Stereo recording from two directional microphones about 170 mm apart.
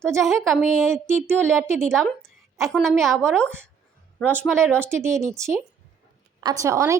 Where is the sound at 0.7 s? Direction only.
15° right (ahead or behind).